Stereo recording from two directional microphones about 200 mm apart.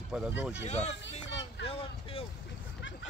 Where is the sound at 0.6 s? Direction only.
35° left (ahead or behind).